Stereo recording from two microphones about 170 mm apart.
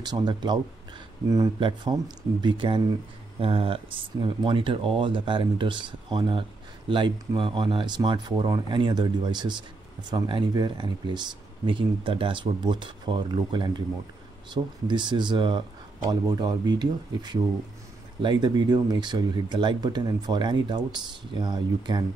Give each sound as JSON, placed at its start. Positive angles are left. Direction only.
{"t": 0.0, "sound": "speech", "side_deg": -25}